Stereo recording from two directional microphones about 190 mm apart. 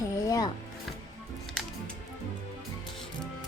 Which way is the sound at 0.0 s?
20° left (ahead or behind).